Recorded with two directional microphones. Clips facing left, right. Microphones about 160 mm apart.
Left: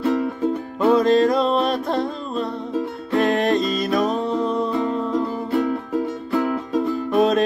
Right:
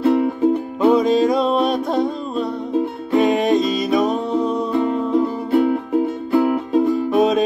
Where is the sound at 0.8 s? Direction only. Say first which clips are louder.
Right 1 dB; centre (ahead or behind).